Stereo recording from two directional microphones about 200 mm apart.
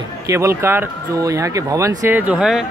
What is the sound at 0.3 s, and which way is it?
Speech, 15° right (ahead or behind).